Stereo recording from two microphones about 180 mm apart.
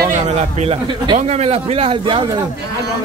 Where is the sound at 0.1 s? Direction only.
35° right (ahead or behind).